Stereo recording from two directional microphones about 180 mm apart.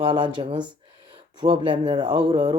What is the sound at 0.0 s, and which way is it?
Speech, 25° right (ahead or behind).